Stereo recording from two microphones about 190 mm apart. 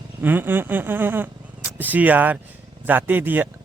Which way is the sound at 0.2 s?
10° right (ahead or behind).